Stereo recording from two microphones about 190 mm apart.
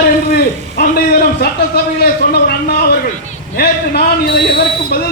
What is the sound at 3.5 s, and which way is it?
A man's voice, 55° left (ahead or behind).